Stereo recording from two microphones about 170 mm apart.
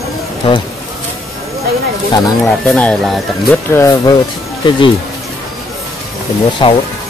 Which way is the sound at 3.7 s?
20° left (ahead or behind).